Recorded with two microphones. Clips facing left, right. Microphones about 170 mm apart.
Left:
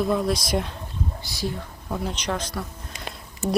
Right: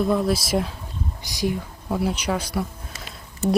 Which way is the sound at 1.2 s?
15° right (ahead or behind).